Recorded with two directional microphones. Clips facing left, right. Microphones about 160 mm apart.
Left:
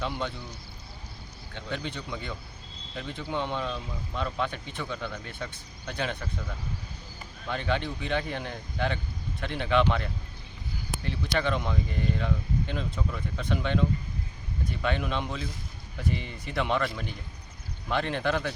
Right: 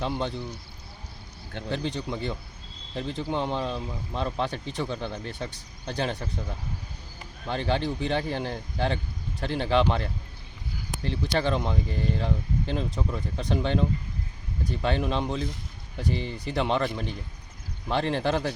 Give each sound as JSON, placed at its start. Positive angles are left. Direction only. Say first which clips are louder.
{"t": 0.0, "sound": "speech", "louder": "right 3 dB", "side_deg": -30}
{"t": 1.7, "sound": "speech", "louder": "right 4 dB", "side_deg": -30}
{"t": 7.4, "sound": "speech", "louder": "right 3 dB", "side_deg": -30}